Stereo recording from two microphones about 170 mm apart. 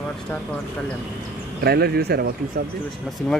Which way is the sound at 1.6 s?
65° right (ahead or behind).